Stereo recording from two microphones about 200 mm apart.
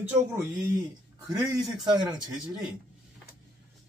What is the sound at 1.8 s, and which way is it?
Speech, 20° right (ahead or behind).